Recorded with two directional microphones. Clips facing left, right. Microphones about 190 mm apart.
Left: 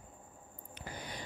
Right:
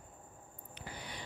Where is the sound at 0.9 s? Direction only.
45° left (ahead or behind).